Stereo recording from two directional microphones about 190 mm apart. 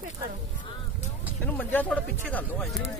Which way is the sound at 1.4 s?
10° left (ahead or behind).